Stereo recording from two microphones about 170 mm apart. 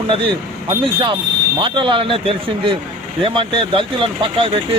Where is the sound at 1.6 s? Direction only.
30° right (ahead or behind).